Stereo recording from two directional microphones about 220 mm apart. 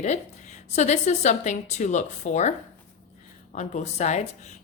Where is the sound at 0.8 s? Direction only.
30° left (ahead or behind).